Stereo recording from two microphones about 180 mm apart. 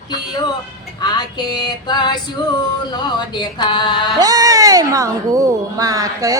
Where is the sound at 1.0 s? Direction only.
20° left (ahead or behind).